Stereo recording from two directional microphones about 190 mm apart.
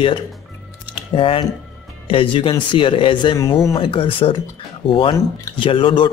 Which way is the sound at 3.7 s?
30° left (ahead or behind).